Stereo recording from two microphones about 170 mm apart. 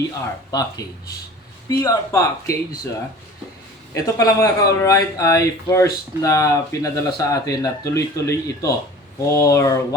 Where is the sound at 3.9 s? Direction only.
20° left (ahead or behind).